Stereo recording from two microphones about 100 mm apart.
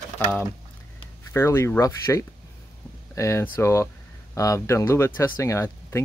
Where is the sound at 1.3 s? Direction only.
30° left (ahead or behind).